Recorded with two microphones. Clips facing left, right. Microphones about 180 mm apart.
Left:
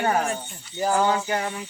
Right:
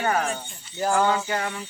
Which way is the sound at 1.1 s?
20° left (ahead or behind).